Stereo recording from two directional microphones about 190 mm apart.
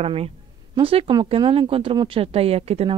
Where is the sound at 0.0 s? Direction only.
30° right (ahead or behind).